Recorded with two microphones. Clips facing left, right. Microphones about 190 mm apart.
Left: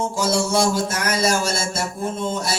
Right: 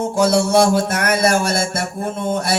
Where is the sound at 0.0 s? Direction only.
60° right (ahead or behind).